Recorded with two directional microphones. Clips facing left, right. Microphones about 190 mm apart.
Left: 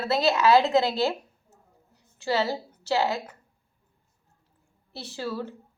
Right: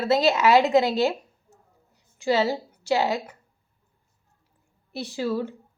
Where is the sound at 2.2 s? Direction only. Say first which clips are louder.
Right 4 dB; 15° right (ahead or behind).